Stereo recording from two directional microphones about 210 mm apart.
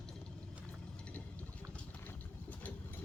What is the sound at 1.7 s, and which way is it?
Vehicle, 5° left (ahead or behind).